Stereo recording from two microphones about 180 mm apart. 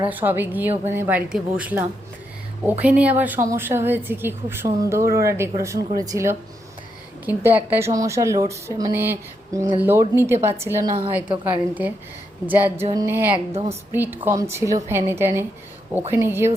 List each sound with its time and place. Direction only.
0.0 s a woman's voice: 10° right (ahead or behind)
13.3 s speech: 35° right (ahead or behind)
13.9 s a woman's voice: 10° right (ahead or behind)